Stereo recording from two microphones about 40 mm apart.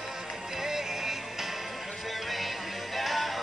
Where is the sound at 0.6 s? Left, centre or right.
Centre.